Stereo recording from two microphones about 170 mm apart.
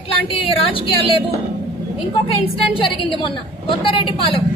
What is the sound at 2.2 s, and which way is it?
A woman's voice, 35° left (ahead or behind).